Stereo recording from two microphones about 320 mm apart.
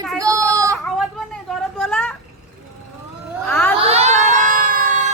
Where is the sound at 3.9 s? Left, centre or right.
Centre.